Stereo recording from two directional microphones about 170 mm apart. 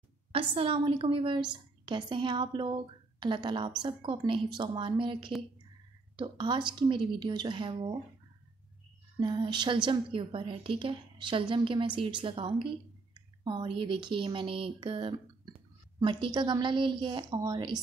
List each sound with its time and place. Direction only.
0.3 s a woman's voice: 35° right (ahead or behind)
9.2 s a woman's voice: 25° right (ahead or behind)